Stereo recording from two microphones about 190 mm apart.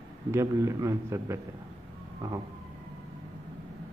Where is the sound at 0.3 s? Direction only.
15° right (ahead or behind).